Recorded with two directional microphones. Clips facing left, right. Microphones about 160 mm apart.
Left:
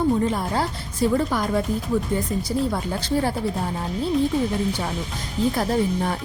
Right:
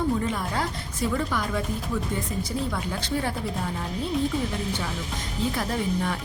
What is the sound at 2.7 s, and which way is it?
Speech, 35° left (ahead or behind).